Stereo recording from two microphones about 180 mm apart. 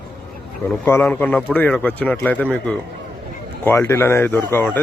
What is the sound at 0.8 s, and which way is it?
Speech, 10° left (ahead or behind).